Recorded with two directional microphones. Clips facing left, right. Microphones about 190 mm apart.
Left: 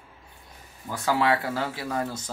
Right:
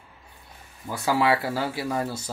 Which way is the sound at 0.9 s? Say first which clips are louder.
Right 1 dB; 10° right (ahead or behind).